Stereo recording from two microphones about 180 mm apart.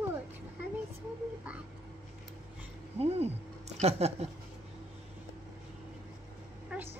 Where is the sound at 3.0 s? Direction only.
35° right (ahead or behind).